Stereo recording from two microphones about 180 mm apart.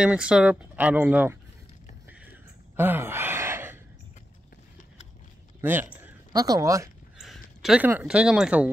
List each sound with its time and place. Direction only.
0.0 s speech: 5° right (ahead or behind)
2.7 s gasp: 10° right (ahead or behind)
5.6 s speech: 10° right (ahead or behind)
7.2 s speech: centre (ahead or behind)